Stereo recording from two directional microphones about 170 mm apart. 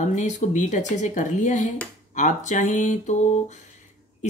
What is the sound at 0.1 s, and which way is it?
Speech, 45° left (ahead or behind).